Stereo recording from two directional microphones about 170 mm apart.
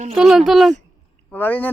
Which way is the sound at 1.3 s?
10° left (ahead or behind).